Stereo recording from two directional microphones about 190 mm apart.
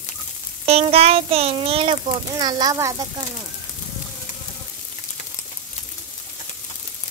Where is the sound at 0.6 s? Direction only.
30° right (ahead or behind); by 3.0 s 15° right (ahead or behind).